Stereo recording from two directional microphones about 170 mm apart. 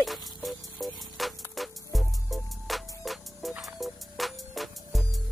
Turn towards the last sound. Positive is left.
turn(degrees=0)  # may be behind; listen again after turning